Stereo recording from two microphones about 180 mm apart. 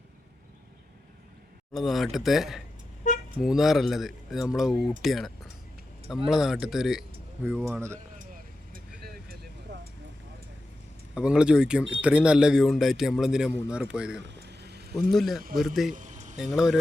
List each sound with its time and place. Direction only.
1.7 s a man's voice: centre (ahead or behind)
8.7 s vehicle: 55° right (ahead or behind)
9.7 s a sound: 70° right (ahead or behind)
11.1 s a man's voice: 5° right (ahead or behind)
14.2 s a sound: 70° right (ahead or behind)
15.1 s a man's voice: centre (ahead or behind)
15.9 s vehicle: 45° right (ahead or behind)
16.4 s a man's voice: 5° right (ahead or behind)